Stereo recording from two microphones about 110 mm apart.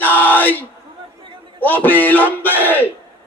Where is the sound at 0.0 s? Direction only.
15° left (ahead or behind).